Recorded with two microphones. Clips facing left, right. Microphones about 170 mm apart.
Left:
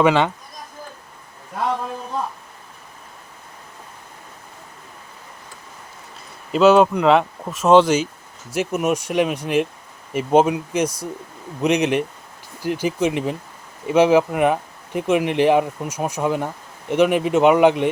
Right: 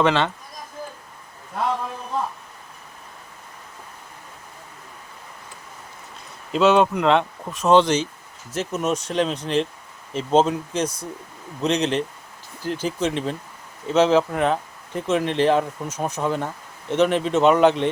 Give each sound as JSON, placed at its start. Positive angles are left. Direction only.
{"t": 0.0, "sound": "speech", "side_deg": 10}
{"t": 6.5, "sound": "speech", "side_deg": 0}